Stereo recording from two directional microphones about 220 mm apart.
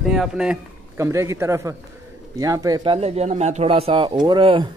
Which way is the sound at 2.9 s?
30° right (ahead or behind).